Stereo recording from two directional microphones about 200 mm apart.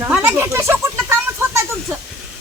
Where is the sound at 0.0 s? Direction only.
5° right (ahead or behind).